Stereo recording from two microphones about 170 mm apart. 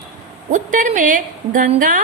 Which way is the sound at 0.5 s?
50° right (ahead or behind).